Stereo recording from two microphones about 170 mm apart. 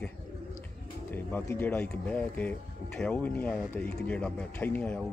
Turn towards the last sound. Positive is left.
turn(degrees=10)  # may be behind; listen again after turning